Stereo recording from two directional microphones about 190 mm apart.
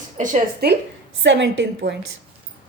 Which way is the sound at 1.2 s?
70° right (ahead or behind).